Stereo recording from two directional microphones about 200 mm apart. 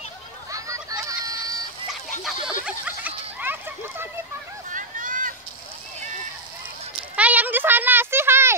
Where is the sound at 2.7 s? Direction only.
5° right (ahead or behind).